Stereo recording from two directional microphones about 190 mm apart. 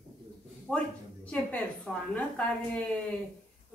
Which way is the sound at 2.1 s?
5° left (ahead or behind).